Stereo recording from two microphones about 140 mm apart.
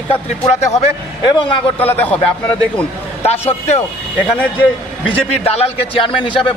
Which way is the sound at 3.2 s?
50° left (ahead or behind).